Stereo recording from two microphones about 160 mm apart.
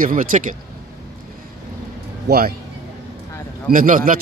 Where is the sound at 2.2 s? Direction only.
70° right (ahead or behind).